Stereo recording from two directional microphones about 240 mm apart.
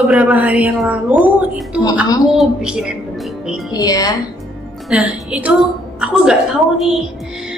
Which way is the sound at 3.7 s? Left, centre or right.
Centre.